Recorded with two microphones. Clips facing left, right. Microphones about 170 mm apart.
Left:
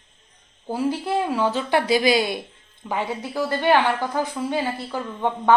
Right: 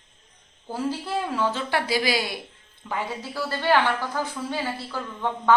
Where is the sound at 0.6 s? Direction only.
15° left (ahead or behind).